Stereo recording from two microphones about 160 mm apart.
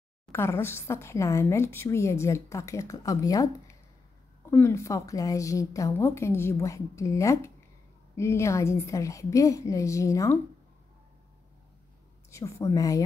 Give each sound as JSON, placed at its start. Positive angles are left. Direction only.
{"t": 0.3, "sound": "a woman's voice", "side_deg": 15}
{"t": 12.3, "sound": "a woman's voice", "side_deg": 15}